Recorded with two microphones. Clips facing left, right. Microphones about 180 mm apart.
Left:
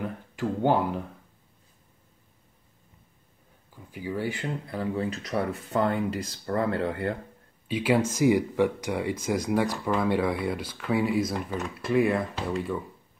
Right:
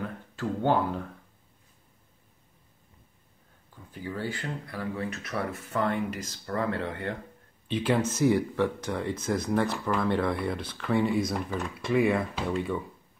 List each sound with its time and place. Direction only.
0.0 s a sound: 15° left (ahead or behind)
3.7 s speech: 10° left (ahead or behind); by 7.2 s 30° left (ahead or behind)
7.6 s speech: 10° left (ahead or behind)